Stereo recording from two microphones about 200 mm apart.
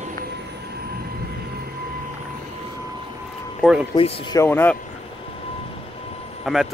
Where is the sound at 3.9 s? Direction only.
25° left (ahead or behind).